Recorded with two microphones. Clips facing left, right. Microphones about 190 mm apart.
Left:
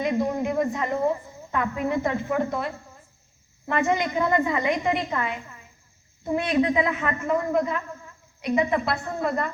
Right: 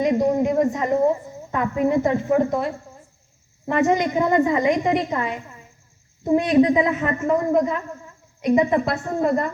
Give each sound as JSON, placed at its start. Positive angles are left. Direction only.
{"t": 0.0, "sound": "a sound", "side_deg": -40}
{"t": 1.5, "sound": "a woman's voice", "side_deg": -35}
{"t": 4.2, "sound": "a woman's voice", "side_deg": -20}
{"t": 4.5, "sound": "a woman's voice", "side_deg": -40}